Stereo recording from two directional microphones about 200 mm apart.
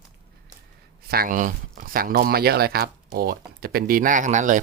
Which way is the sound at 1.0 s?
50° right (ahead or behind).